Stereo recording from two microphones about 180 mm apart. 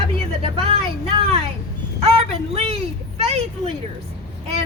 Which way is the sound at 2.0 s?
35° right (ahead or behind).